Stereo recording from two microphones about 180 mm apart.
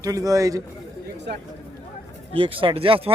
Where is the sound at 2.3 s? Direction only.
30° right (ahead or behind).